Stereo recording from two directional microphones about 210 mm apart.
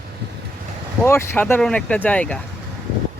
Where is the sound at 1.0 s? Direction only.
10° left (ahead or behind).